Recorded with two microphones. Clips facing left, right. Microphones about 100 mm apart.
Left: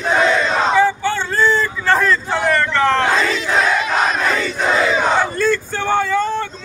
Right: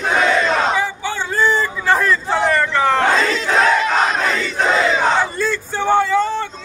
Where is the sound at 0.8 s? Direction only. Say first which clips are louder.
Left 6 dB; 15° right (ahead or behind).